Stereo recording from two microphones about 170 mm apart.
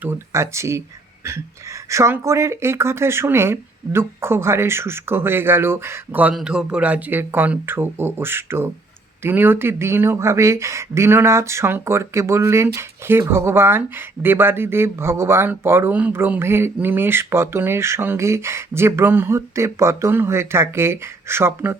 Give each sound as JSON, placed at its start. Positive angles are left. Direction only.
{"t": 0.0, "sound": "speech", "side_deg": -15}
{"t": 1.9, "sound": "speech", "side_deg": -15}